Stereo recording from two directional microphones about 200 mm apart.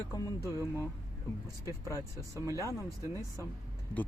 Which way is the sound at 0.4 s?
15° right (ahead or behind).